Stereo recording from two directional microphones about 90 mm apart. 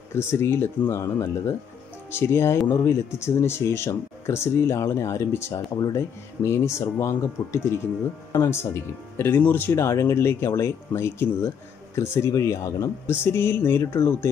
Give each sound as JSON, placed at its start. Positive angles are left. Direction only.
{"t": 0.1, "sound": "speech", "side_deg": 30}